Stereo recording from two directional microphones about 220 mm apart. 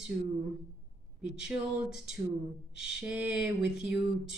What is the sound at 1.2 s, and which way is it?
Speech, 5° right (ahead or behind).